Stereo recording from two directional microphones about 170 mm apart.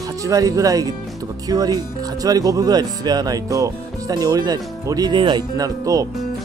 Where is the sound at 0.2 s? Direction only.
20° right (ahead or behind).